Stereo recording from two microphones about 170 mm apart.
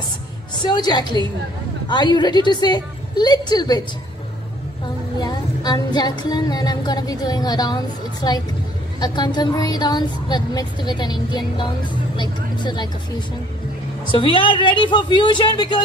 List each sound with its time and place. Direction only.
0.6 s music: 25° left (ahead or behind)
5.2 s music: 25° left (ahead or behind)
14.0 s music: 30° left (ahead or behind)